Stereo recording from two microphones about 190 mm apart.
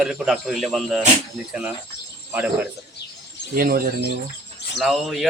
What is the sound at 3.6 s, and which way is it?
Speech, 50° right (ahead or behind).